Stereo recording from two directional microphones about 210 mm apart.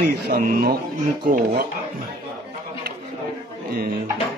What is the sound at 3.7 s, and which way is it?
Speech, 45° right (ahead or behind).